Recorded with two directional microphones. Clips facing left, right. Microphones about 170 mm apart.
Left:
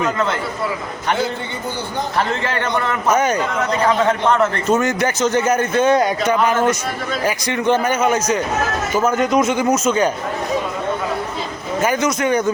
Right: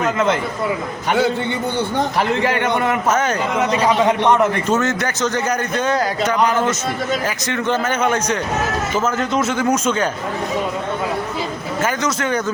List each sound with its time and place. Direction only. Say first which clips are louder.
2.1 s a man's voice: right 1 dB; 15° right (ahead or behind)
3.1 s a man's voice: left 4 dB; 10° left (ahead or behind)
3.7 s a man's voice: even; 15° right (ahead or behind)
4.7 s a man's voice: left 2 dB; 15° left (ahead or behind)
11.8 s a man's voice: left 3 dB; 15° left (ahead or behind)